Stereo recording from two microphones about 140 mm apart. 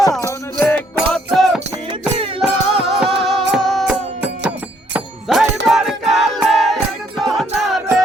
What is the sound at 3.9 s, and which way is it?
Music, 10° right (ahead or behind).